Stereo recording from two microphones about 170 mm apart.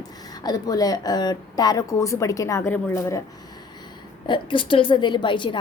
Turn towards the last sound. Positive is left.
turn(degrees=30)  # may be behind; listen again after turning